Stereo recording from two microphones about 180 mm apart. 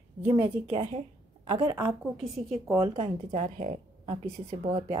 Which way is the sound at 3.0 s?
40° right (ahead or behind).